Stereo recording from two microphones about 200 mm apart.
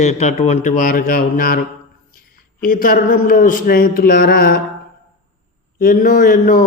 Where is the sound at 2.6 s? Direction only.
45° left (ahead or behind).